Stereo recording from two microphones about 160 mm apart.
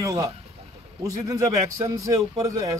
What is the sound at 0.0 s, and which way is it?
A man's voice, 20° right (ahead or behind).